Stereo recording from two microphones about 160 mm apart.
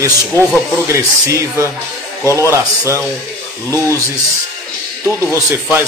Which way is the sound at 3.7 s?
15° left (ahead or behind).